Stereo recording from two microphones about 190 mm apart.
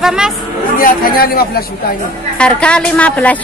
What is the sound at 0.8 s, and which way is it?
Speech, 50° left (ahead or behind).